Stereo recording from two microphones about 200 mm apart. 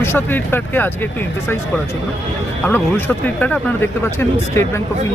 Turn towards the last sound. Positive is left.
turn(degrees=10)  # may be behind; listen again after turning